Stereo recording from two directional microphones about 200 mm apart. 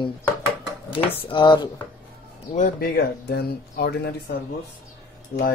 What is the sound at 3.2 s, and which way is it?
Speech, 55° left (ahead or behind).